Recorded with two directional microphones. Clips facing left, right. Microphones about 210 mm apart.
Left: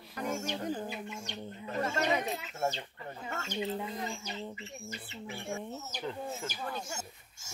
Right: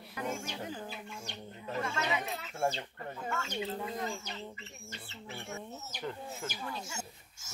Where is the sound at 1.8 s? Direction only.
40° left (ahead or behind).